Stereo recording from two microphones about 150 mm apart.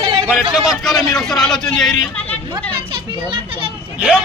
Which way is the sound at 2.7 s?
35° right (ahead or behind).